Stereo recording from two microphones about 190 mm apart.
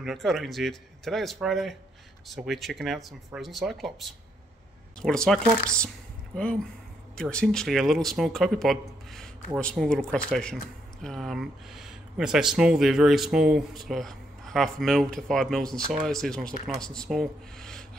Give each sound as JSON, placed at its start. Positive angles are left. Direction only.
{"t": 0.0, "sound": "speech", "side_deg": 0}